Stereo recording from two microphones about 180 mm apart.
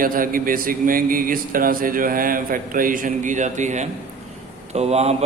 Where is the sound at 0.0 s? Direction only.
50° right (ahead or behind).